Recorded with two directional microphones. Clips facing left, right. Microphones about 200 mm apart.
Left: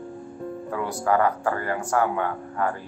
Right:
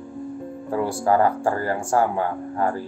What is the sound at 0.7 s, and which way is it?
Speech, 30° right (ahead or behind).